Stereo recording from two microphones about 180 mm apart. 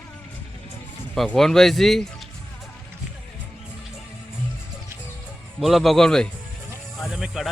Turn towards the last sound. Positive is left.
turn(degrees=0)  # may be behind; listen again after turning